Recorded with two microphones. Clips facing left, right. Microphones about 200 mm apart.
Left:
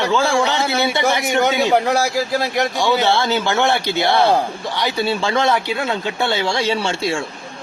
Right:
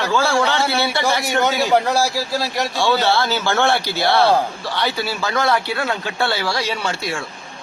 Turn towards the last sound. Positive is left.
turn(degrees=25)  # may be behind; listen again after turning